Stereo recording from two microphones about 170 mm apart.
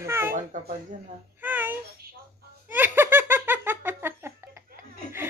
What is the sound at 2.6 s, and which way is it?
Giggle, 10° right (ahead or behind).